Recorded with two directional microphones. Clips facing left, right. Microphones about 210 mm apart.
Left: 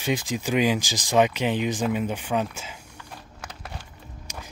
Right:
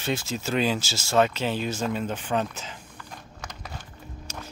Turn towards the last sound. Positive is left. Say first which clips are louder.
# right 1 dB
turn(degrees=15)  # may be behind; listen again after turning